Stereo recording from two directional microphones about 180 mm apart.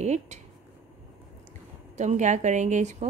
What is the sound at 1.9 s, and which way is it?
A woman's voice, 40° right (ahead or behind).